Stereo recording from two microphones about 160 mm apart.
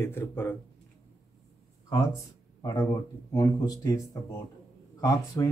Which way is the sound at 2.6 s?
25° left (ahead or behind).